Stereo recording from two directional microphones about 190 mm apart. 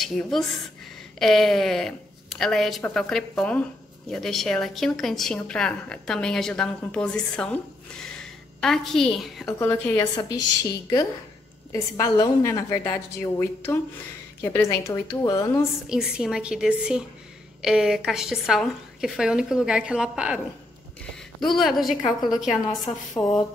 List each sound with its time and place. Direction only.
0.0 s a woman's voice: centre (ahead or behind)
8.0 s a sound: 5° left (ahead or behind)
9.6 s a woman's voice: 10° left (ahead or behind)
15.9 s a woman's voice: 5° right (ahead or behind)
21.5 s a woman's voice: centre (ahead or behind)
23.1 s a woman's voice: 20° left (ahead or behind)